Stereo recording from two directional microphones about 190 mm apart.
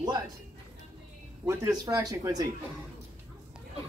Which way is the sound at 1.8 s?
20° right (ahead or behind).